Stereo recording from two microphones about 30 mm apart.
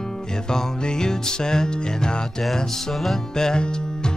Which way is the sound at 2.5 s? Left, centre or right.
Centre.